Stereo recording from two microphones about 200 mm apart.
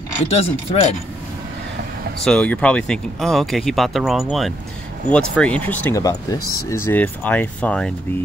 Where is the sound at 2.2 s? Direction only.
5° left (ahead or behind).